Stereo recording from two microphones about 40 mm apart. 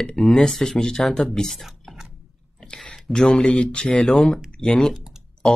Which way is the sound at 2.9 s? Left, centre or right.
Centre.